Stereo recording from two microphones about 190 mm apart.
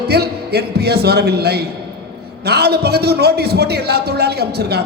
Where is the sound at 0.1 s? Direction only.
60° right (ahead or behind).